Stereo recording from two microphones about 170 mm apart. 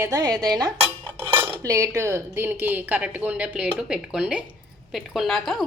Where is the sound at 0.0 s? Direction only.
20° right (ahead or behind).